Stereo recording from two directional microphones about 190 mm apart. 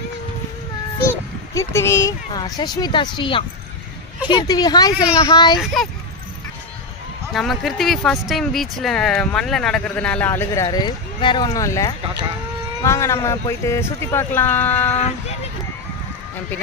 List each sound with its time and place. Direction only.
1.5 s speech: 15° left (ahead or behind)
4.9 s speech: 5° right (ahead or behind)
5.2 s speech: 20° left (ahead or behind)
7.3 s speech: centre (ahead or behind)
14.9 s speech: 35° left (ahead or behind)